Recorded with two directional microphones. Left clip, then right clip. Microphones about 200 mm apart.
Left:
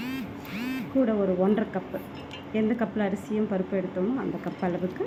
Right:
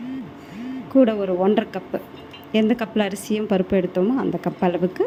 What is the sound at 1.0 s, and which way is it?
A woman's voice, 40° right (ahead or behind).